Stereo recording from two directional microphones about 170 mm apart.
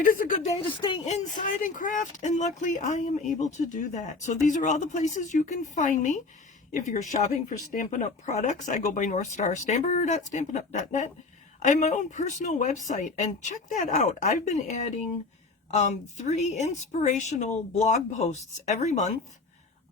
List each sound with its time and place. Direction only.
0.0 s speech: 55° left (ahead or behind)
0.6 s speech: 30° left (ahead or behind)
1.0 s speech: 45° left (ahead or behind)